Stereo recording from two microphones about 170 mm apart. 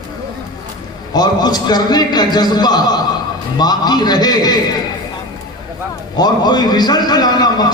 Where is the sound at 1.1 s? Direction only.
25° left (ahead or behind).